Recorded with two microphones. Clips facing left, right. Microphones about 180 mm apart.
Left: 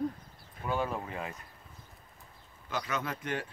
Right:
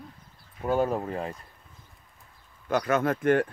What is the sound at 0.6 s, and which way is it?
Speech, 40° right (ahead or behind).